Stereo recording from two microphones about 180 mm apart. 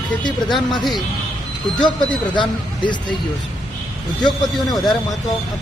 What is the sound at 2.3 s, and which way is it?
Speech, 25° left (ahead or behind).